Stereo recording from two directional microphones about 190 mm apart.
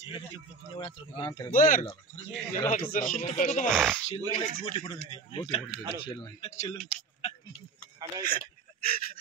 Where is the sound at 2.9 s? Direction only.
45° left (ahead or behind).